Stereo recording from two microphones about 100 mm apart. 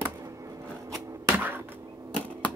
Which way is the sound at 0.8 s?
35° right (ahead or behind).